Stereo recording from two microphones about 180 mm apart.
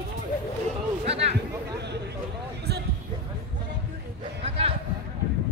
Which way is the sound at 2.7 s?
65° right (ahead or behind).